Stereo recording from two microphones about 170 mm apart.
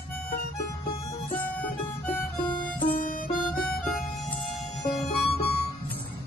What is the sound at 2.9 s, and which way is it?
Harmonica, 55° left (ahead or behind).